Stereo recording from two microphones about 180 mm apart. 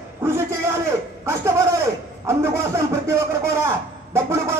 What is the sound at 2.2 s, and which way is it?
A man's voice, 15° right (ahead or behind).